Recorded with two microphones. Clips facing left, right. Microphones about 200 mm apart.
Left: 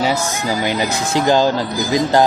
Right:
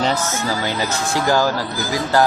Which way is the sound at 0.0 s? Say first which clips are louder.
Left 2 dB; 10° left (ahead or behind).